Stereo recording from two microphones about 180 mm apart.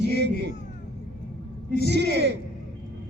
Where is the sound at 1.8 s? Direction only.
70° right (ahead or behind).